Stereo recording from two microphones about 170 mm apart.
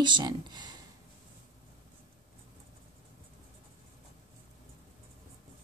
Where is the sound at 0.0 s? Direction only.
25° right (ahead or behind).